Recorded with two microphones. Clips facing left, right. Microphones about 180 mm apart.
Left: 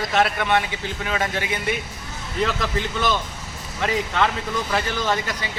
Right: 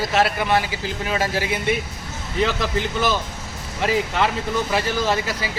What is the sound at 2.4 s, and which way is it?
A man's voice, centre (ahead or behind).